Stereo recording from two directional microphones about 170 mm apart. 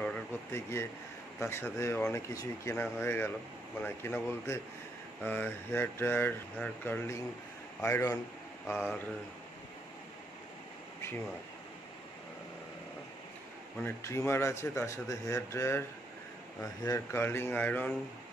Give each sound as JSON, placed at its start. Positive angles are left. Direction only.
{"t": 0.0, "sound": "a man's voice", "side_deg": 10}
{"t": 13.7, "sound": "a man's voice", "side_deg": 15}
{"t": 16.8, "sound": "a man's voice", "side_deg": 15}